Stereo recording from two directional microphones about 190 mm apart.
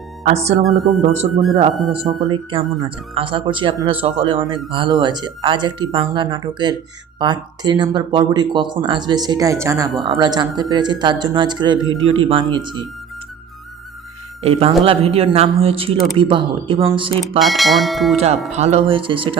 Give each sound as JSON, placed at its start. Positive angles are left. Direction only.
{"t": 0.3, "sound": "speech", "side_deg": -35}
{"t": 0.6, "sound": "speech", "side_deg": 0}
{"t": 1.0, "sound": "speech", "side_deg": -35}
{"t": 11.9, "sound": "a man's voice", "side_deg": -90}
{"t": 12.3, "sound": "speech", "side_deg": -25}
{"t": 14.4, "sound": "speech", "side_deg": -30}
{"t": 17.4, "sound": "speech", "side_deg": 0}
{"t": 18.5, "sound": "speech", "side_deg": -35}